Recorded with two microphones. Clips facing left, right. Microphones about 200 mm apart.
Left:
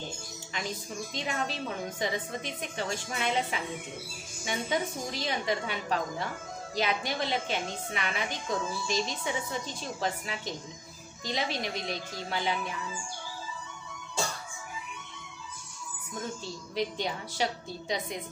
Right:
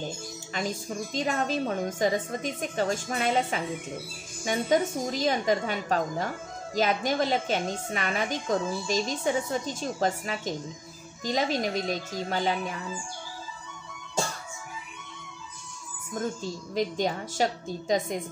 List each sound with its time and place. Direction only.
0.6 s a woman's voice: 45° right (ahead or behind)
16.4 s a woman's voice: 45° right (ahead or behind)